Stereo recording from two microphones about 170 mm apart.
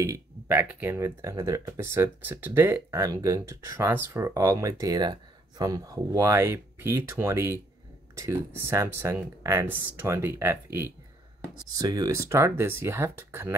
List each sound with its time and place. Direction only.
0.0 s speech: 15° right (ahead or behind)